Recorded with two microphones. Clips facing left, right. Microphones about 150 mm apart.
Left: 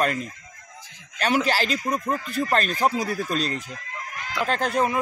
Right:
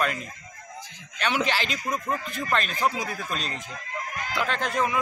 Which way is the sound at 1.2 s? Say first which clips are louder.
Left 4 dB; 40° left (ahead or behind).